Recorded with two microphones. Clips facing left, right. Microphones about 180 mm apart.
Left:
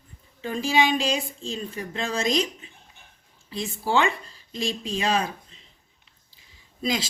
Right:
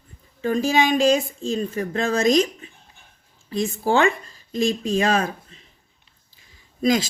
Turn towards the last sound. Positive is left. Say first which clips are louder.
# right 8 dB
turn(degrees=-45)  # may be behind; listen again after turning